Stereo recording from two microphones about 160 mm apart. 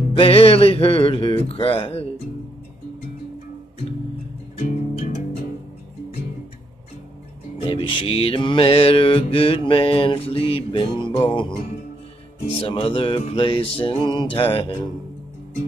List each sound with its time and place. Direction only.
0.1 s mantra: 35° left (ahead or behind)
4.6 s music: 50° left (ahead or behind)
7.6 s mantra: 30° left (ahead or behind)
12.5 s mantra: 35° left (ahead or behind)